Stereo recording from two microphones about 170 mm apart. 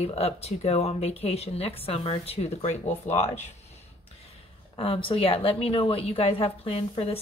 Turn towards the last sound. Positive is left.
turn(degrees=35)  # may be behind; listen again after turning